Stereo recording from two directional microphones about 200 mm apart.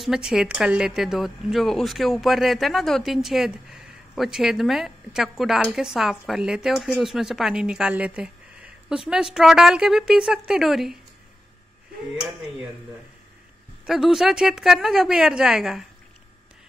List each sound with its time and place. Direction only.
0.0 s a woman's voice: centre (ahead or behind)
13.8 s a woman's voice: centre (ahead or behind)